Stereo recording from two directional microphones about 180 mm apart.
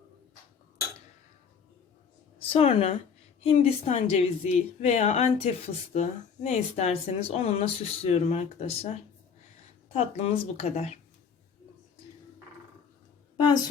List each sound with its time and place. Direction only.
2.4 s a woman's voice: 30° left (ahead or behind)
9.9 s a woman's voice: 35° left (ahead or behind)
13.3 s a woman's voice: 25° left (ahead or behind)